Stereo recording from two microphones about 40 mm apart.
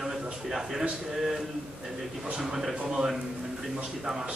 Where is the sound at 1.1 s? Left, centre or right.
Centre.